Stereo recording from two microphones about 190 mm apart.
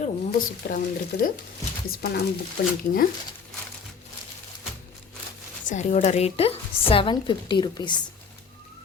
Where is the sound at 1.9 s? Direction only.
55° left (ahead or behind).